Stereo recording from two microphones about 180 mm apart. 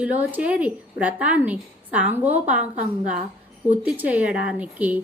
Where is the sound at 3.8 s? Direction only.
10° right (ahead or behind).